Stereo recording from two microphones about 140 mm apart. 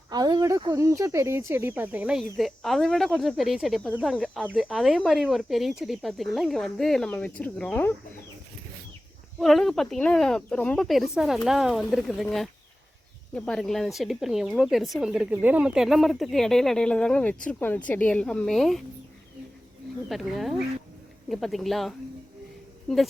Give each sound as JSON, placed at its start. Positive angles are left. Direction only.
{"t": 0.1, "sound": "a sound", "side_deg": -30}
{"t": 0.6, "sound": "speech", "side_deg": -25}
{"t": 9.4, "sound": "speech", "side_deg": 0}
{"t": 20.1, "sound": "speech", "side_deg": 0}